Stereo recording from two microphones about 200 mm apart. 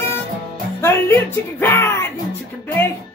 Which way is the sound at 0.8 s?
15° left (ahead or behind).